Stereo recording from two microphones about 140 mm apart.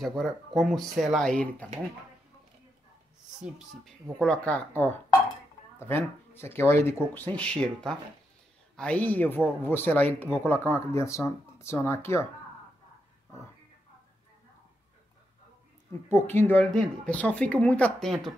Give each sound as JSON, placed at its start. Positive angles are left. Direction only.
{"t": 0.0, "sound": "speech", "side_deg": 0}
{"t": 4.2, "sound": "speech", "side_deg": 10}
{"t": 8.7, "sound": "speech", "side_deg": 10}
{"t": 16.1, "sound": "speech", "side_deg": 15}